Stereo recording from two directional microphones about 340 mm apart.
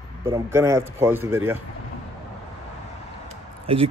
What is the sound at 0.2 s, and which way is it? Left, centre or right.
A man's voice, centre.